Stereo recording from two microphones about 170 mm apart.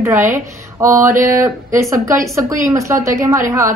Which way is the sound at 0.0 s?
15° right (ahead or behind).